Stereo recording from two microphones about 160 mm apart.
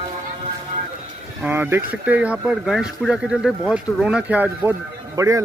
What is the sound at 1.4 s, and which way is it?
A man's voice, 10° right (ahead or behind).